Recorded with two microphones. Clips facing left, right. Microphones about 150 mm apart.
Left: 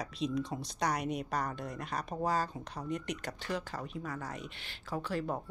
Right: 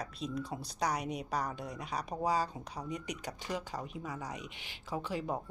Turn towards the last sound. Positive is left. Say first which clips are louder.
# left 1 dB
turn(degrees=-15)  # may be behind; listen again after turning